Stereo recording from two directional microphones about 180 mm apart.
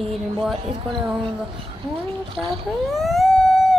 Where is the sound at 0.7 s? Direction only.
30° right (ahead or behind).